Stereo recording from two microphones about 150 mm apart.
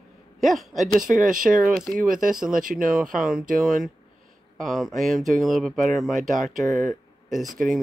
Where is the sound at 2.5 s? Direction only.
65° right (ahead or behind).